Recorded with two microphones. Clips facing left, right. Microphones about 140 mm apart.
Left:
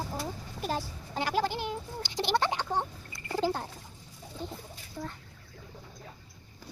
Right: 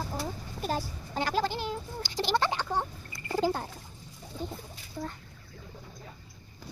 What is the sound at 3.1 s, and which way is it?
Chicken, 5° right (ahead or behind).